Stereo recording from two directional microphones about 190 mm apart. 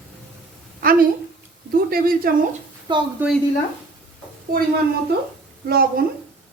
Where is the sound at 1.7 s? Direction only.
50° right (ahead or behind).